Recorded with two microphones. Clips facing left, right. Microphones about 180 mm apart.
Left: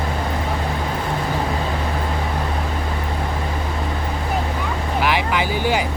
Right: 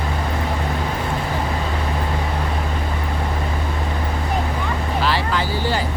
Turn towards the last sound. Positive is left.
turn(degrees=15)  # may be behind; listen again after turning